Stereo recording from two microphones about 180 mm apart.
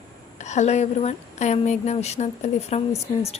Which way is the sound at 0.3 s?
40° left (ahead or behind).